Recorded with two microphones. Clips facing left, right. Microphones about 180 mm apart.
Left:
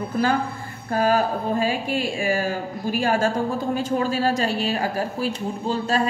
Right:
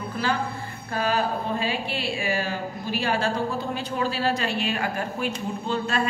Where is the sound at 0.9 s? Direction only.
45° left (ahead or behind).